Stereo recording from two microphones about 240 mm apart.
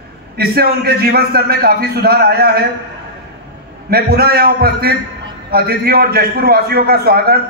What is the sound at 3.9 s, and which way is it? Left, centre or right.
A man's voice, right.